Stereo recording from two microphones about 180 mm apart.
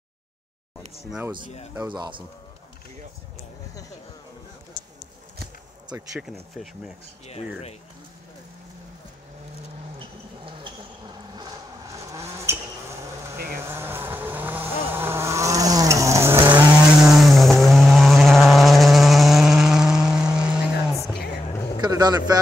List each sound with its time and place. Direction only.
2.0 s speech: 25° right (ahead or behind)
7.2 s speech: 35° left (ahead or behind)
9.9 s vehicle: 30° right (ahead or behind)
13.7 s vehicle: 10° right (ahead or behind)
16.5 s vehicle: centre (ahead or behind)
21.8 s a sound: 20° right (ahead or behind)